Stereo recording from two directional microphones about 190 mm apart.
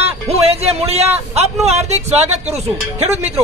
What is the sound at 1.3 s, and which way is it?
Speech, 35° right (ahead or behind).